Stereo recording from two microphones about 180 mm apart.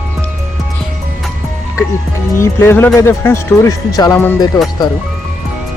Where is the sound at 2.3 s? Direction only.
15° left (ahead or behind).